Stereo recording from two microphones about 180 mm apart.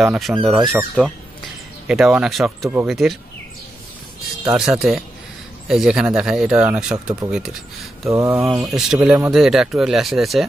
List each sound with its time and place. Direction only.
0.0 s speech: 5° right (ahead or behind)
4.5 s speech: 5° right (ahead or behind)
8.1 s mantra: 15° right (ahead or behind)
8.6 s speech: 5° right (ahead or behind)